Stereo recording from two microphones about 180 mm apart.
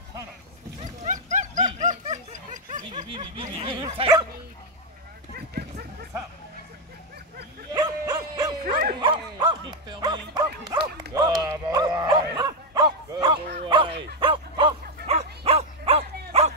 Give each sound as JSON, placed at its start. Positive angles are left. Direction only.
{"t": 0.7, "sound": "a sound", "side_deg": -45}
{"t": 3.1, "sound": "bow-wow", "side_deg": -30}
{"t": 5.5, "sound": "dog", "side_deg": -60}
{"t": 7.7, "sound": "dog", "side_deg": -25}
{"t": 9.0, "sound": "bow-wow", "side_deg": -25}
{"t": 11.1, "sound": "dog", "side_deg": -20}